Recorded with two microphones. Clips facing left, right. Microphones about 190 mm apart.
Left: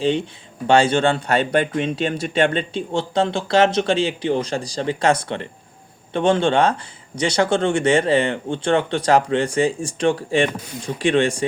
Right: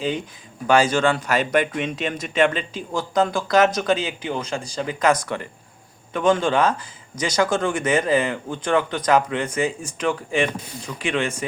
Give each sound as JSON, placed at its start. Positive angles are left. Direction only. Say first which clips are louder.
{"t": 0.0, "sound": "speech", "louder": "left 5 dB", "side_deg": 30}